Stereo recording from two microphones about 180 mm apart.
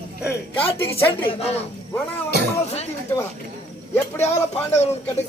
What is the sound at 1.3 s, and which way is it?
Speech, 35° left (ahead or behind).